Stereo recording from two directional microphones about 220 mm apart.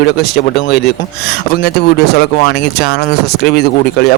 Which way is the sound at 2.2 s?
45° left (ahead or behind).